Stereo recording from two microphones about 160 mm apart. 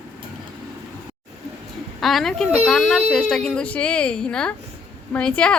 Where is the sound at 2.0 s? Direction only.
Centre (ahead or behind).